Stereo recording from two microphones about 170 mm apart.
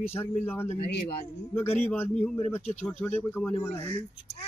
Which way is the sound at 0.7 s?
35° left (ahead or behind).